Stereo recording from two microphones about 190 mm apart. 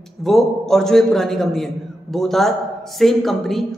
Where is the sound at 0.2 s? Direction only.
Centre (ahead or behind).